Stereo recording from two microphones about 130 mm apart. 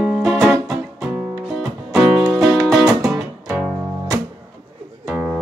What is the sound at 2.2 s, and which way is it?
Music, 20° right (ahead or behind).